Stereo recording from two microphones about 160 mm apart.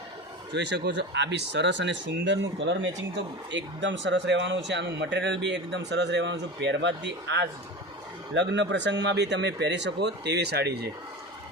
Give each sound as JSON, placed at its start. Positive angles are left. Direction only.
{"t": 0.5, "sound": "speech", "side_deg": -90}
{"t": 3.8, "sound": "speech", "side_deg": -90}
{"t": 8.7, "sound": "speech", "side_deg": -90}